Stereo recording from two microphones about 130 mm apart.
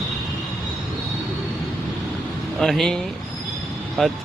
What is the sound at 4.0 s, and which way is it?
Speech, centre (ahead or behind).